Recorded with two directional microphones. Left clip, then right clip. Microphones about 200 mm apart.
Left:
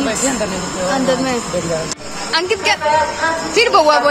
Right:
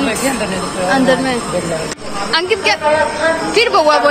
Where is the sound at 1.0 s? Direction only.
20° left (ahead or behind).